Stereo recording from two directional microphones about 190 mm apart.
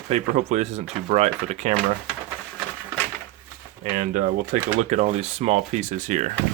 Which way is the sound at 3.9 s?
45° right (ahead or behind).